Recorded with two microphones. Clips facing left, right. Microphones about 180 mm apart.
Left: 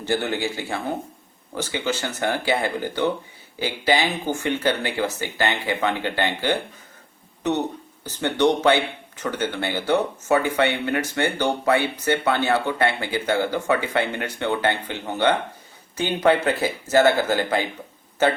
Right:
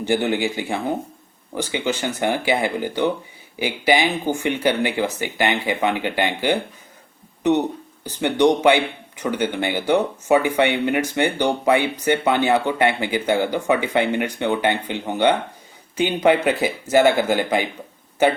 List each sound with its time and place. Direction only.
0.0 s speech: 15° right (ahead or behind)
8.0 s speech: 15° right (ahead or behind)